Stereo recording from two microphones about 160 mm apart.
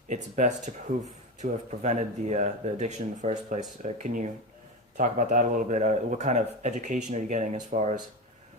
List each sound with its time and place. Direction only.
0.1 s speech: 50° right (ahead or behind)